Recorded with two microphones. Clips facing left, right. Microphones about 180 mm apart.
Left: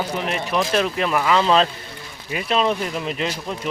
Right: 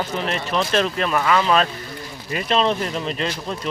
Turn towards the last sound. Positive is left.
turn(degrees=15)  # may be behind; listen again after turning